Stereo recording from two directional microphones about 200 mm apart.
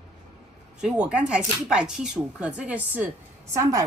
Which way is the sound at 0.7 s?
5° right (ahead or behind).